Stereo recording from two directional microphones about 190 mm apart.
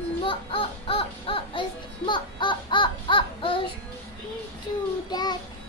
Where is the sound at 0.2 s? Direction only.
25° left (ahead or behind).